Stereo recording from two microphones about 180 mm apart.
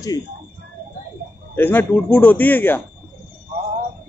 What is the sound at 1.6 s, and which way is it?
A man's voice, 10° left (ahead or behind).